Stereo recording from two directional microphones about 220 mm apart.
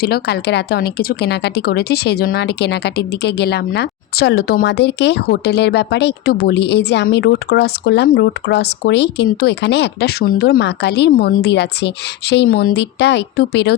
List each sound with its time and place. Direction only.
0.0 s speech: 45° left (ahead or behind)